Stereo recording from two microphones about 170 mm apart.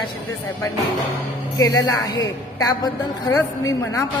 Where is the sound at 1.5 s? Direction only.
20° left (ahead or behind).